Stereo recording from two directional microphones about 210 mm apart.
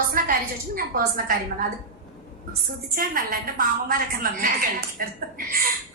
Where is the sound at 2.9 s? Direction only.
40° right (ahead or behind).